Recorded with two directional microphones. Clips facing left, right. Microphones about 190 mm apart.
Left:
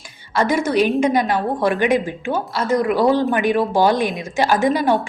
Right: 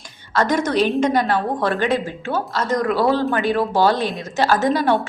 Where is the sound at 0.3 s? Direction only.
10° left (ahead or behind).